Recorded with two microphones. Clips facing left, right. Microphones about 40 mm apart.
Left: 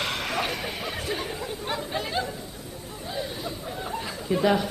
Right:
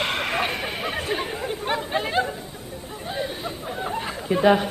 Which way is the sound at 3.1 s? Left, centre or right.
Right.